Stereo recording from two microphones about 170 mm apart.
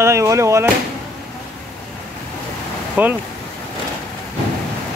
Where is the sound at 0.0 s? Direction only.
15° right (ahead or behind).